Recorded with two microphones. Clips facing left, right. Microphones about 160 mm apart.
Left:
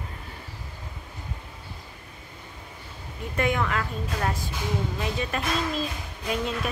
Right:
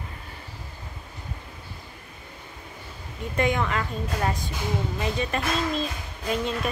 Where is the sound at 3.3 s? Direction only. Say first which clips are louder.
Right 1 dB; 5° left (ahead or behind).